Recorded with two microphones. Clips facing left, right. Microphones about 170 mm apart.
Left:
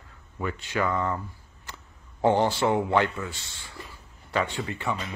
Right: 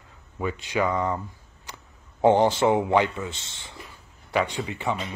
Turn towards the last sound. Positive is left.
turn(degrees=-20)  # may be behind; listen again after turning